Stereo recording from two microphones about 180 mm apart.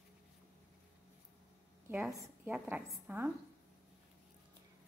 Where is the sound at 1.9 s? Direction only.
15° right (ahead or behind).